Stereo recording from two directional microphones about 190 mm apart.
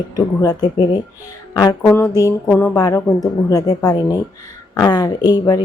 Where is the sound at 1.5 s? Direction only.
20° left (ahead or behind).